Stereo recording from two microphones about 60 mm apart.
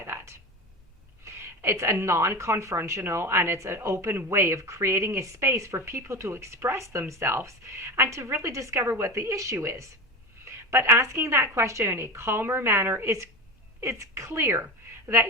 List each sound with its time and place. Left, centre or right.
0.0 s a sound: right
1.2 s a woman's voice: right
3.0 s speech: right
10.4 s speech: right